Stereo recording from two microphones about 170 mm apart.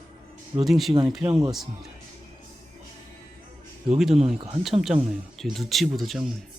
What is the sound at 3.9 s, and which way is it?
Speech, centre (ahead or behind).